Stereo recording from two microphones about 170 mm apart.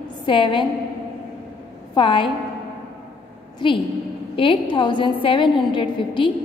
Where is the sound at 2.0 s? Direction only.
30° left (ahead or behind).